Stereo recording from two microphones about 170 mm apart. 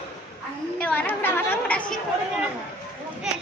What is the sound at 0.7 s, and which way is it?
Chatter, 10° left (ahead or behind).